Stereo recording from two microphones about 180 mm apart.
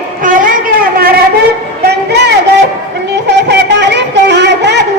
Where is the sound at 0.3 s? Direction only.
50° right (ahead or behind).